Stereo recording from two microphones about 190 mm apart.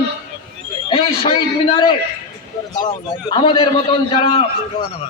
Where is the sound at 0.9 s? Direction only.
30° left (ahead or behind).